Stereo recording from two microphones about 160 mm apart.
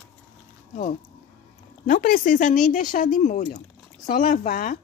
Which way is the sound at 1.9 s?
60° left (ahead or behind).